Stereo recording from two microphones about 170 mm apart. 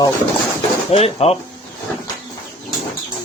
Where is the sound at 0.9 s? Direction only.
35° left (ahead or behind).